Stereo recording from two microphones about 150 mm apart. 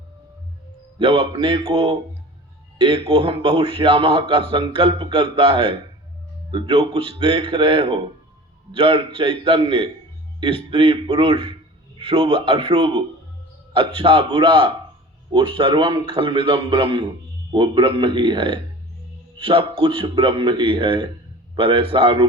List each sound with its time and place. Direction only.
0.9 s a man's voice: 35° right (ahead or behind)